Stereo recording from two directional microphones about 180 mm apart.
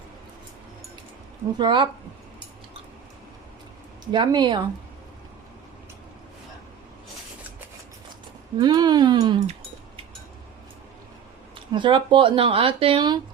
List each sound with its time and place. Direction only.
1.5 s speech: 25° right (ahead or behind)
4.1 s speech: 25° right (ahead or behind)
8.5 s speech: 25° right (ahead or behind)
11.5 s speech: 25° right (ahead or behind)